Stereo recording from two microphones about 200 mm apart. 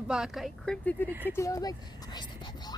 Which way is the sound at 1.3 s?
15° left (ahead or behind).